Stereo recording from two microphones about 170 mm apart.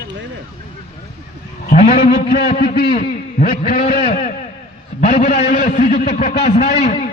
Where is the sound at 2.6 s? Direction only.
65° left (ahead or behind).